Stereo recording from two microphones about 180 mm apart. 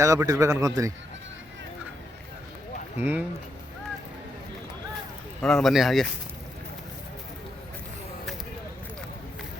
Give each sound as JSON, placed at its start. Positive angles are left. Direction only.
{"t": 0.0, "sound": "a man's voice", "side_deg": -15}
{"t": 3.0, "sound": "a man's voice", "side_deg": -10}
{"t": 5.4, "sound": "speech", "side_deg": 0}